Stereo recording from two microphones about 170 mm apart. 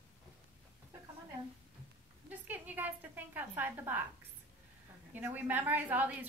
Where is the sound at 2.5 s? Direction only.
10° right (ahead or behind).